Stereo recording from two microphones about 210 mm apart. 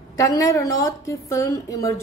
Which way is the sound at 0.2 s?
15° left (ahead or behind).